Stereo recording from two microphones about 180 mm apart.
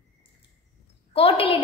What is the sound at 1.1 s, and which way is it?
Speech, 30° left (ahead or behind).